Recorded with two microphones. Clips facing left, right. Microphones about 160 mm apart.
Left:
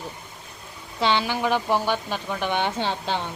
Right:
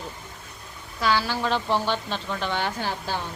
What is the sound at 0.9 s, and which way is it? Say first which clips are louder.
Speech: left 1 dB; 25° left (ahead or behind).